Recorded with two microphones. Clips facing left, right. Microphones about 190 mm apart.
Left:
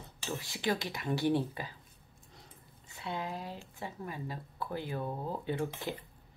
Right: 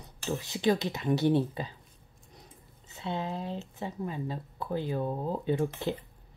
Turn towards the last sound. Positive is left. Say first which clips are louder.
# right 6 dB
turn(degrees=-20)  # may be behind; listen again after turning